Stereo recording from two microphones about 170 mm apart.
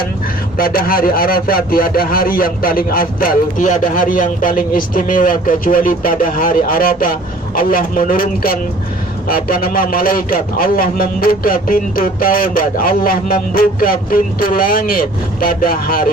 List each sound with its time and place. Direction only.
0.6 s a man's voice: 60° left (ahead or behind)